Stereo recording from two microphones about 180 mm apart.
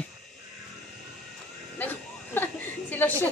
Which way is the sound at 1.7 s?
10° left (ahead or behind).